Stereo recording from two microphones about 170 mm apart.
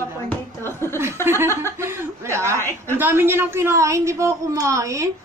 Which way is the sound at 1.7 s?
15° right (ahead or behind).